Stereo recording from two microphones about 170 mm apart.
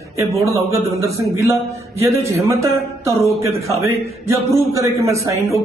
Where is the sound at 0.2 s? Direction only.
15° right (ahead or behind).